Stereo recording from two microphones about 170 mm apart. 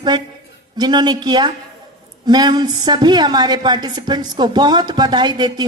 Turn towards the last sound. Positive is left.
turn(degrees=-25)  # may be behind; listen again after turning